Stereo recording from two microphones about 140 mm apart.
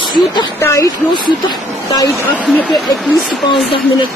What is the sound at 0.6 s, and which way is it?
Speech, 20° left (ahead or behind).